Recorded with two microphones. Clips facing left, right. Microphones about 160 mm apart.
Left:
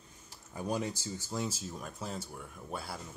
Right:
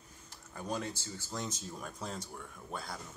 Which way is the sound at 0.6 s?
15° left (ahead or behind).